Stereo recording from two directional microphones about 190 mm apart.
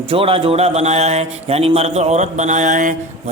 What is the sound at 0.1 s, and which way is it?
A man's voice, 30° right (ahead or behind).